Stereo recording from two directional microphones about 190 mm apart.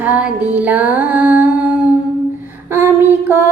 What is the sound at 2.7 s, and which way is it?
Female singing, 10° right (ahead or behind).